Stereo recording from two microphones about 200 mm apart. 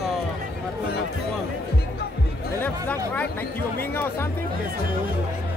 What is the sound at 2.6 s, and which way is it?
Speech, 10° left (ahead or behind).